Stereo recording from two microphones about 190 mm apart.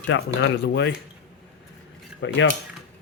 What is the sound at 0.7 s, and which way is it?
Speech, 65° left (ahead or behind).